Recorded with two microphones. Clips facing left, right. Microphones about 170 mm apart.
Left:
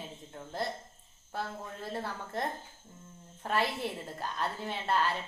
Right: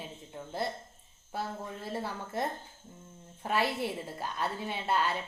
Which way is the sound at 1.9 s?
5° right (ahead or behind).